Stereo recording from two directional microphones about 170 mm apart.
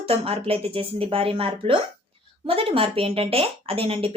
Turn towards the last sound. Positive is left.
turn(degrees=-35)  # may be behind; listen again after turning